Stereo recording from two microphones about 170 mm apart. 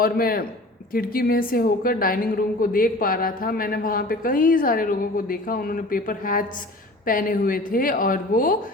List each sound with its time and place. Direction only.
0.0 s a woman's voice: 60° left (ahead or behind)